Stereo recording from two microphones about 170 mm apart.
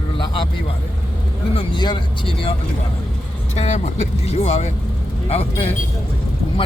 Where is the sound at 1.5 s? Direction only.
25° left (ahead or behind).